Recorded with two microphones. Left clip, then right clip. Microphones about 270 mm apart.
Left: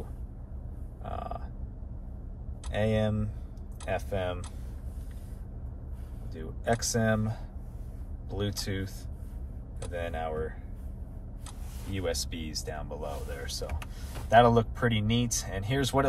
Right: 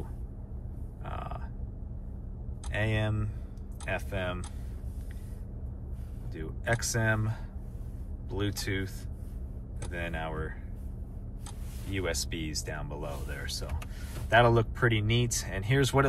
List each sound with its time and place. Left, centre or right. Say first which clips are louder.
1.0 s a sound: left 3 dB; centre
2.7 s speech: left 3 dB; centre
6.3 s speech: left 2 dB; centre
9.9 s speech: left 2 dB; centre
12.0 s speech: even; centre